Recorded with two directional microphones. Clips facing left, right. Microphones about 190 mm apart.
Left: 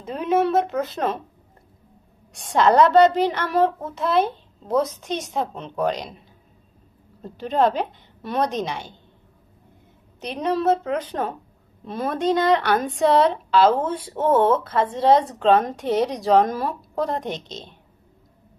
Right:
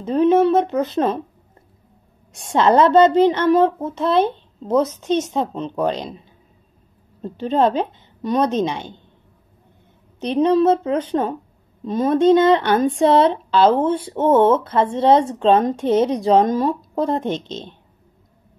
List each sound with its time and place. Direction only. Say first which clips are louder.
0.0 s a child's voice: right 7 dB; 30° right (ahead or behind)
2.3 s a child's voice: right 2 dB; 25° right (ahead or behind)
7.4 s a child's voice: right 3 dB; 25° right (ahead or behind)
10.3 s a child's voice: right 6 dB; 25° right (ahead or behind)